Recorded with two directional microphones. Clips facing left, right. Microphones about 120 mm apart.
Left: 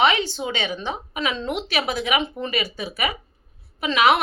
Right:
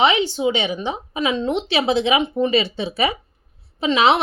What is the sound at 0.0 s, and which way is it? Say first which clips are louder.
A woman's voice: right 3 dB; 20° right (ahead or behind).